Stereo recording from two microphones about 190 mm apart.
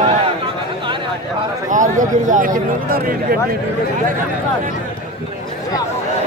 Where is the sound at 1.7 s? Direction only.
40° right (ahead or behind).